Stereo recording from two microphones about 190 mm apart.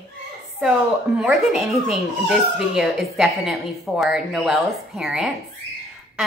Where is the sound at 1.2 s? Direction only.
Centre (ahead or behind).